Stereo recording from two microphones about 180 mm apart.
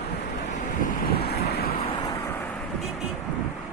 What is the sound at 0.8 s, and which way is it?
Wind noise, 60° left (ahead or behind).